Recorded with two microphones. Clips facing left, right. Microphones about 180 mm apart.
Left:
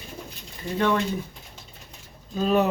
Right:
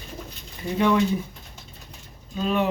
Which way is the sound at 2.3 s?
40° left (ahead or behind).